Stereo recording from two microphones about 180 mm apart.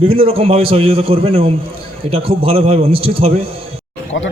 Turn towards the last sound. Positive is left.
turn(degrees=90)